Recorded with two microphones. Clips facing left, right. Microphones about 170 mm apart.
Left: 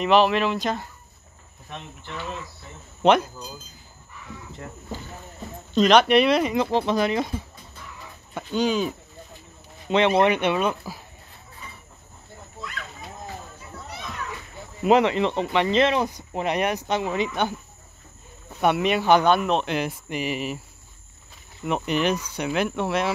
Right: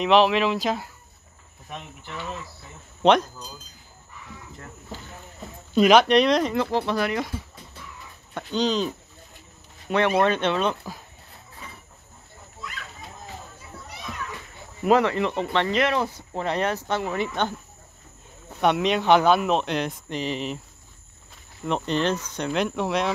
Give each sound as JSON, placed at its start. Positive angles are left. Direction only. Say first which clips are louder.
{"t": 0.0, "sound": "speech", "louder": "even", "side_deg": 0}
{"t": 3.0, "sound": "speech", "louder": "even", "side_deg": 5}
{"t": 5.8, "sound": "speech", "louder": "right 1 dB", "side_deg": -5}
{"t": 6.0, "sound": "speech", "louder": "even", "side_deg": 5}
{"t": 6.5, "sound": "speech", "louder": "left 2 dB", "side_deg": 20}
{"t": 8.4, "sound": "speech", "louder": "left 1 dB", "side_deg": 10}
{"t": 9.8, "sound": "speech", "louder": "left 2 dB", "side_deg": 20}
{"t": 14.8, "sound": "speech", "louder": "left 1 dB", "side_deg": 20}
{"t": 18.6, "sound": "speech", "louder": "even", "side_deg": 5}
{"t": 21.6, "sound": "speech", "louder": "left 1 dB", "side_deg": 10}